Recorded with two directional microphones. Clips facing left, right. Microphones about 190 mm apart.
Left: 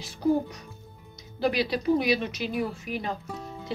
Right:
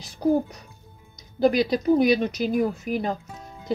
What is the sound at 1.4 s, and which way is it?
A woman's voice, 45° right (ahead or behind).